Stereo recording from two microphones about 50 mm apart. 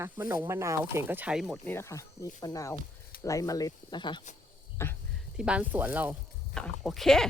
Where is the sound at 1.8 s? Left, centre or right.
Left.